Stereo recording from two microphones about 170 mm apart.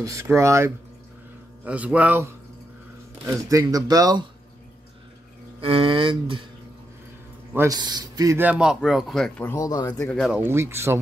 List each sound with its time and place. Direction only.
0.0 s a man's voice: 15° right (ahead or behind)
5.6 s speech: 35° right (ahead or behind)
7.5 s a man's voice: 20° right (ahead or behind)
8.4 s speech: 5° right (ahead or behind)
9.5 s speech: 20° left (ahead or behind)
10.3 s a man's voice: 15° right (ahead or behind)